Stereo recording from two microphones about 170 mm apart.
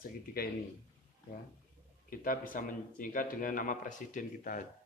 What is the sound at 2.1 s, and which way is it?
A man's voice, 55° left (ahead or behind).